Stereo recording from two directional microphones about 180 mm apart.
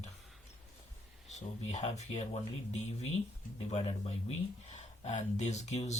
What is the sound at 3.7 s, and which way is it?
Speech, 35° left (ahead or behind).